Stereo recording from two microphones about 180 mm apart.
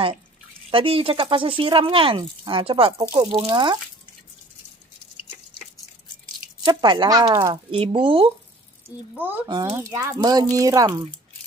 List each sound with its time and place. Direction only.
0.7 s speech: 30° right (ahead or behind)
6.6 s speech: 25° right (ahead or behind)
7.7 s speech: 30° right (ahead or behind)
9.1 s speech: 10° right (ahead or behind)